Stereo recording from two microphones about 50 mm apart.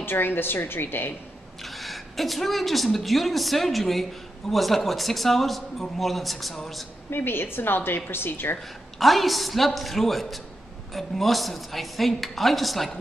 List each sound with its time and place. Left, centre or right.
0.0 s a woman's voice: left
1.6 s a woman's voice: centre
7.1 s a woman's voice: left
9.0 s speech: centre